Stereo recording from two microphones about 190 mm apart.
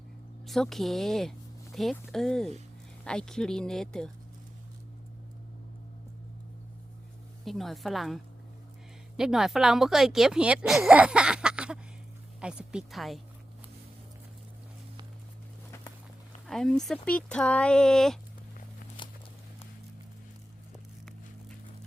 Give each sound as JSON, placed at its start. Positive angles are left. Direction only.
{"t": 0.4, "sound": "speech", "side_deg": 0}
{"t": 7.4, "sound": "speech", "side_deg": 0}
{"t": 16.5, "sound": "speech", "side_deg": 0}
{"t": 19.0, "sound": "a sound", "side_deg": 25}